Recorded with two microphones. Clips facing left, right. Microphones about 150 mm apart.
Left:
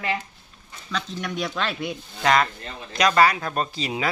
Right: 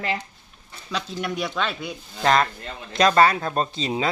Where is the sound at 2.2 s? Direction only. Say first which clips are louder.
Right 1 dB; 25° right (ahead or behind).